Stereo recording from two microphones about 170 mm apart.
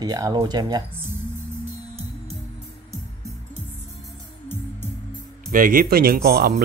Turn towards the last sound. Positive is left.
turn(degrees=-65)  # may be behind; listen again after turning